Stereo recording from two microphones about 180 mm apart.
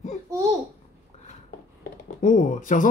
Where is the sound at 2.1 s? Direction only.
45° left (ahead or behind).